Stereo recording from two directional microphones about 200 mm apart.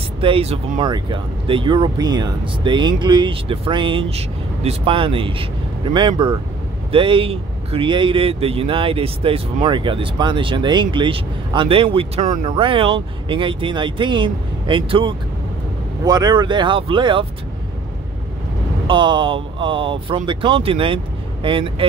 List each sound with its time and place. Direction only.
0.2 s speech: 30° right (ahead or behind)
18.9 s speech: 25° right (ahead or behind)